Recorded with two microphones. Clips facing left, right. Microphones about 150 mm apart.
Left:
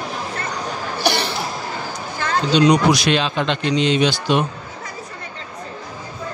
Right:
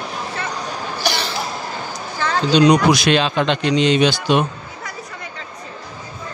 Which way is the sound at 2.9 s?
65° right (ahead or behind).